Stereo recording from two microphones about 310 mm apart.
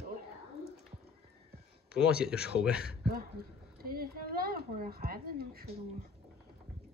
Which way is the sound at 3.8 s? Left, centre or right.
Right.